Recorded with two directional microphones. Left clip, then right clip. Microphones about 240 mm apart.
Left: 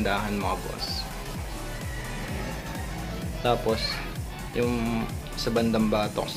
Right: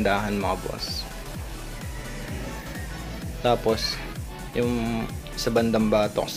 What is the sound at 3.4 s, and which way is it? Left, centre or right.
Speech, right.